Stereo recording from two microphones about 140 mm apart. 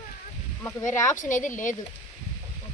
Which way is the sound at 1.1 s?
65° left (ahead or behind).